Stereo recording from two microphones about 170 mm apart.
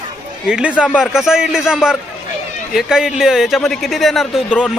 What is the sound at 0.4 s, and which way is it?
Speech, 5° right (ahead or behind).